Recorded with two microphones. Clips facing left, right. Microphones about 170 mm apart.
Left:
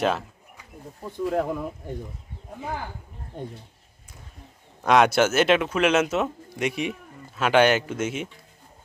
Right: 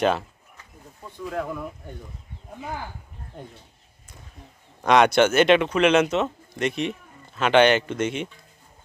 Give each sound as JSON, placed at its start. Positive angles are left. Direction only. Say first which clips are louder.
{"t": 1.3, "sound": "speech", "louder": "left 3 dB", "side_deg": 30}
{"t": 4.8, "sound": "speech", "louder": "right 1 dB", "side_deg": 5}